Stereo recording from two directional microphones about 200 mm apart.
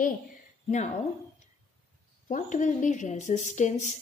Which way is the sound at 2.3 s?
40° left (ahead or behind).